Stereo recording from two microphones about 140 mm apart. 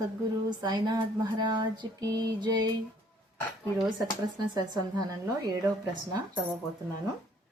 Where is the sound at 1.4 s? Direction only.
35° right (ahead or behind).